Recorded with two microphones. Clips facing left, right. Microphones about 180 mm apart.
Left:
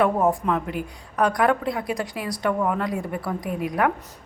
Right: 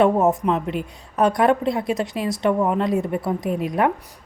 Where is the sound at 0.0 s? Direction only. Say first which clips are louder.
Right 3 dB; 25° right (ahead or behind).